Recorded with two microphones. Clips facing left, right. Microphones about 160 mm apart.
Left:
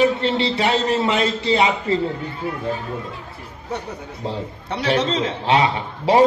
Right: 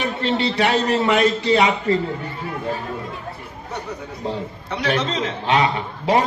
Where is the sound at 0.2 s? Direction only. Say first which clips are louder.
Even; 25° left (ahead or behind).